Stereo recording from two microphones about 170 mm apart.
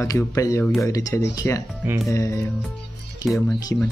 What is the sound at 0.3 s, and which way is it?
Speech, 20° left (ahead or behind).